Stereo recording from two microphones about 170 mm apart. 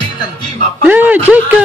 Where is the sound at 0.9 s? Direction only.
10° right (ahead or behind).